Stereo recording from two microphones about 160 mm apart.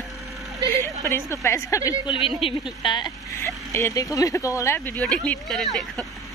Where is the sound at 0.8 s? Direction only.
15° left (ahead or behind).